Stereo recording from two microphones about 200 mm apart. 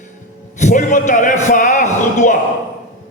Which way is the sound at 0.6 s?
40° left (ahead or behind).